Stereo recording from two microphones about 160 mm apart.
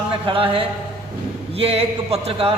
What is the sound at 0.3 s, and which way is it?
A man's voice, 35° right (ahead or behind).